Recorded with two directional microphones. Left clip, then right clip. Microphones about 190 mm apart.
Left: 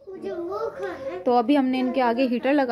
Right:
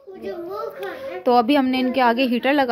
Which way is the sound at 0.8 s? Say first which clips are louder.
Right 2 dB; centre (ahead or behind).